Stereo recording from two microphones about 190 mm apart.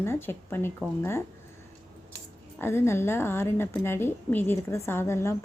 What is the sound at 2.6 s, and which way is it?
A woman's voice, 15° left (ahead or behind).